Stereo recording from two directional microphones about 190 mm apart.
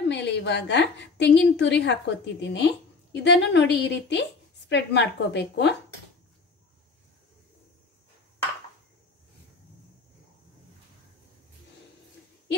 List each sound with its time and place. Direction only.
0.1 s a woman's voice: 65° left (ahead or behind)